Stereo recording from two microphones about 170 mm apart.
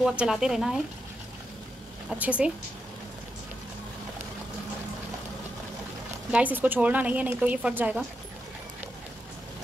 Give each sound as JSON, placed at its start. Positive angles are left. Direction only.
{"t": 0.0, "sound": "speech", "side_deg": -5}
{"t": 2.0, "sound": "a woman's voice", "side_deg": -10}
{"t": 6.3, "sound": "a woman's voice", "side_deg": -10}